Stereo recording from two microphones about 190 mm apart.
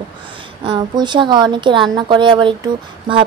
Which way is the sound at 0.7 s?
25° right (ahead or behind).